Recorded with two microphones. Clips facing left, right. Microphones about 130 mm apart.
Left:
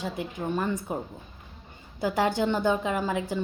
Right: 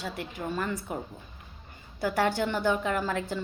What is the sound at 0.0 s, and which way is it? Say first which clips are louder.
Speech: left 3 dB; 20° left (ahead or behind).